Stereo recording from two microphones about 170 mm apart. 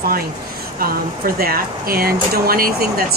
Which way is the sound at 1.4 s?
60° right (ahead or behind).